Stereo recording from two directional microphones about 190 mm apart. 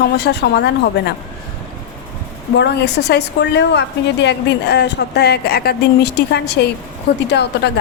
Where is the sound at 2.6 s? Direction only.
65° left (ahead or behind).